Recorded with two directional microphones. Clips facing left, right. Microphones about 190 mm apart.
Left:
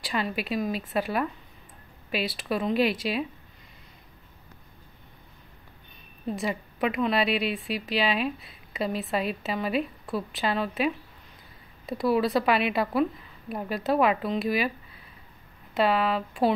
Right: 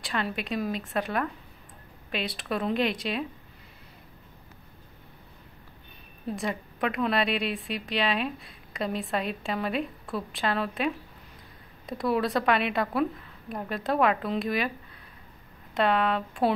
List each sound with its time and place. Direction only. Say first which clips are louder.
0.0 s a woman's voice: left 2 dB; 5° left (ahead or behind)
6.3 s a woman's voice: left 1 dB; centre (ahead or behind)
15.7 s a woman's voice: left 1 dB; 5° left (ahead or behind)